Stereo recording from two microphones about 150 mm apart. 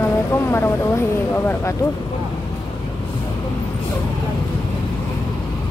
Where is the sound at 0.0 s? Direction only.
15° left (ahead or behind).